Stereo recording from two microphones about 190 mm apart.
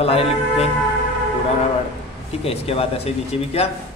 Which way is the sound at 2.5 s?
30° left (ahead or behind).